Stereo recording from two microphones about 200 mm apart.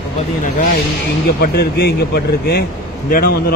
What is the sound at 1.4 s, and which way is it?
A man's voice, 50° left (ahead or behind).